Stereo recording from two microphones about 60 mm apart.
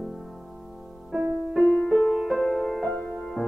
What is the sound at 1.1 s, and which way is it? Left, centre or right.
Music, centre.